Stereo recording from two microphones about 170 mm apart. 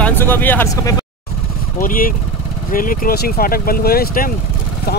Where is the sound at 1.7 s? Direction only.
55° left (ahead or behind).